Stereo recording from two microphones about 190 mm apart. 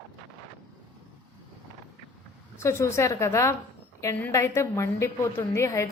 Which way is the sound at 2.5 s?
15° left (ahead or behind).